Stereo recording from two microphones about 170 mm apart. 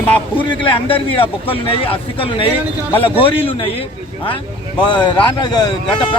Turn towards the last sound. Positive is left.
turn(degrees=25)  # may be behind; listen again after turning